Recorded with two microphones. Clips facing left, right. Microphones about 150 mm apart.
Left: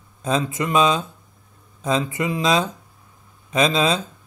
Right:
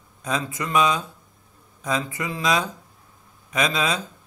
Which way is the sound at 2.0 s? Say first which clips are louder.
Left 5 dB; 20° left (ahead or behind).